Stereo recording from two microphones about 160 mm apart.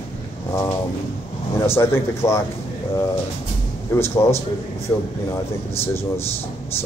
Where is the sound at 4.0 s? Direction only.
15° left (ahead or behind).